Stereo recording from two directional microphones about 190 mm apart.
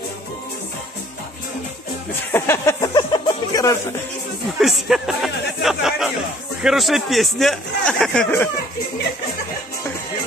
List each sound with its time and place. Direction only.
2.3 s speech: 15° left (ahead or behind)
4.6 s speech: centre (ahead or behind)